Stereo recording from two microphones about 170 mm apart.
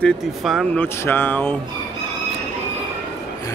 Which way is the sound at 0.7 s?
15° left (ahead or behind).